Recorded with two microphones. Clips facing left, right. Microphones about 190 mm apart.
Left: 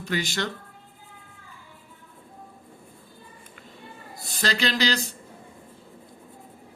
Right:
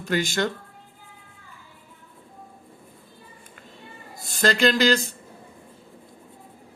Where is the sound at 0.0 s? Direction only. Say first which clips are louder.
Right 4 dB; 50° right (ahead or behind).